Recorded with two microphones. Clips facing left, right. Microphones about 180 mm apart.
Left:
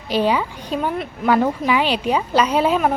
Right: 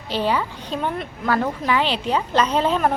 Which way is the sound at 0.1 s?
15° left (ahead or behind).